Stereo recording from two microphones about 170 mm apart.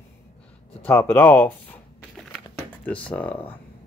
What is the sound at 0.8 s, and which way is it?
Speech, 15° left (ahead or behind).